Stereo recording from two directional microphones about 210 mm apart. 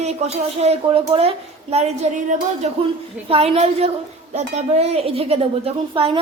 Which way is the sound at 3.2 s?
25° right (ahead or behind).